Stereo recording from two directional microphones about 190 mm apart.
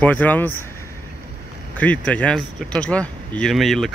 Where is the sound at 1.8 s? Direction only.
5° left (ahead or behind).